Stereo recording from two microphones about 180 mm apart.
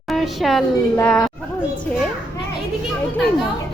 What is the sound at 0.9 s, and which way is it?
Speech, 5° left (ahead or behind).